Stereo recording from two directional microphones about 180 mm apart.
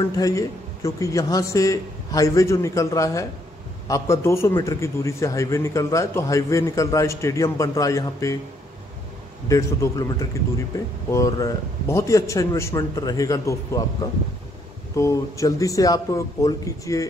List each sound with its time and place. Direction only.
0.0 s a man's voice: 20° left (ahead or behind)
9.5 s a man's voice: 20° left (ahead or behind)
15.0 s a man's voice: 15° left (ahead or behind)